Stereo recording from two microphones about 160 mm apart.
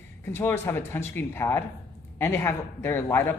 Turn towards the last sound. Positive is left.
turn(degrees=15)  # may be behind; listen again after turning